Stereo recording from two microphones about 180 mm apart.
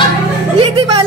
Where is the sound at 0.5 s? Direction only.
25° right (ahead or behind).